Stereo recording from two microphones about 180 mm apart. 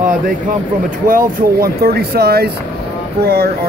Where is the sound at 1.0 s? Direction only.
55° right (ahead or behind).